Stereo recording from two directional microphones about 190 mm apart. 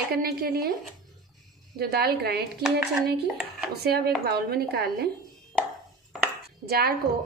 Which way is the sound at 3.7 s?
55° right (ahead or behind).